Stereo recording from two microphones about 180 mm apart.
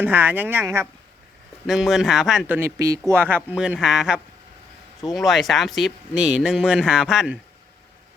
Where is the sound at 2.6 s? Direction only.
15° right (ahead or behind).